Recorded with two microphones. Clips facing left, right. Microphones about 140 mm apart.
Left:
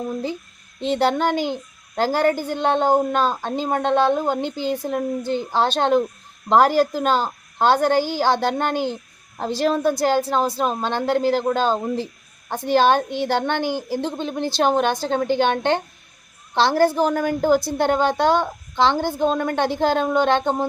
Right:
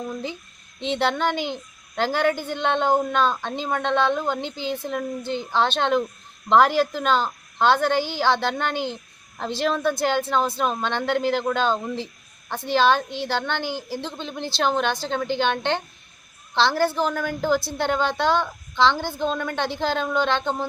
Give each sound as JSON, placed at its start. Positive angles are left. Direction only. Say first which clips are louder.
{"t": 0.8, "sound": "a woman's voice", "louder": "left 4 dB", "side_deg": 40}